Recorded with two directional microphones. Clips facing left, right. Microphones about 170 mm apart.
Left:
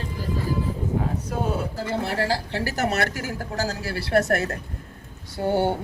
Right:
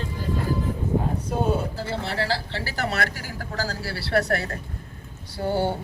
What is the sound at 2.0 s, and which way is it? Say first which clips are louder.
A woman's voice: left 3 dB; 45° left (ahead or behind).